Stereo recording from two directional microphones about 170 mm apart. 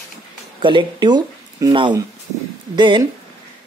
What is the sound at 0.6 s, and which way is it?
Speech, 30° right (ahead or behind).